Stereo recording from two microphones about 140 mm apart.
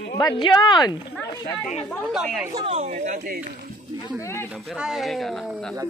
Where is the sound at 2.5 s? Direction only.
50° right (ahead or behind).